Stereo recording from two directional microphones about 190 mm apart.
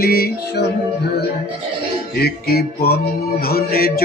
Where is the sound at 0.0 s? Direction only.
55° left (ahead or behind).